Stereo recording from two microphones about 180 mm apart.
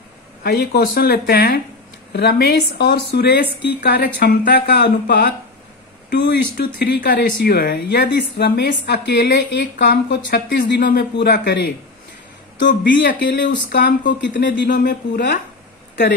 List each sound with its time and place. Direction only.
0.4 s a woman's voice: 60° left (ahead or behind)
6.0 s speech: 75° left (ahead or behind)
6.5 s a woman's voice: 55° left (ahead or behind)
13.2 s speech: 75° left (ahead or behind)
14.7 s a woman's voice: 60° left (ahead or behind)